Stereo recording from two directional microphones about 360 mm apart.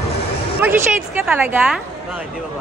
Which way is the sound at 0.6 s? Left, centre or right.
Centre.